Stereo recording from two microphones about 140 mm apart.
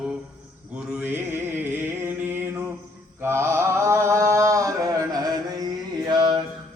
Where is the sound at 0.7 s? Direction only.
10° right (ahead or behind).